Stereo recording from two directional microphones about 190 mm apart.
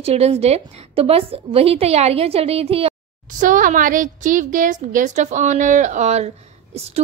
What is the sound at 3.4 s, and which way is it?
A woman's voice, 45° right (ahead or behind).